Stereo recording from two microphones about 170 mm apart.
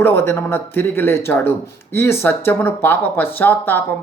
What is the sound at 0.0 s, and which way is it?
Speech, 15° left (ahead or behind).